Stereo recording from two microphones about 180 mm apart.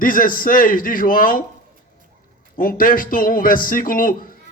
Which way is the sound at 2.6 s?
50° left (ahead or behind).